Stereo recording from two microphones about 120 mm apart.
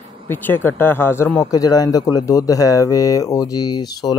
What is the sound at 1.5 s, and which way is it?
Speech, 30° left (ahead or behind).